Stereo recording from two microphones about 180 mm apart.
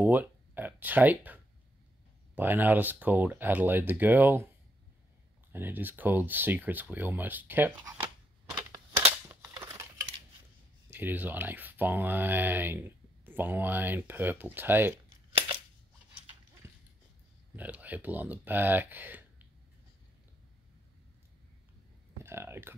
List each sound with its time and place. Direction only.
0.0 s a sound: 10° right (ahead or behind)
2.3 s speech: 10° right (ahead or behind)
5.5 s speech: 10° right (ahead or behind)
9.6 s a sound: 15° right (ahead or behind)
10.9 s speech: 10° right (ahead or behind)
15.3 s scissors: 30° right (ahead or behind)
16.6 s dog: 15° right (ahead or behind)
17.6 s speech: 10° right (ahead or behind)
22.2 s speech: 15° right (ahead or behind)